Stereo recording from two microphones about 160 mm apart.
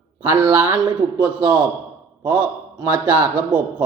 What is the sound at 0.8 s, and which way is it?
A man's voice, 30° right (ahead or behind).